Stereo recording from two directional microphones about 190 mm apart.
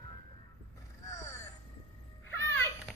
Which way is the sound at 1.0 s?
15° left (ahead or behind).